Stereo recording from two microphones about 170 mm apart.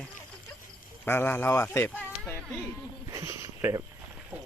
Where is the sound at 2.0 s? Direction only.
10° left (ahead or behind).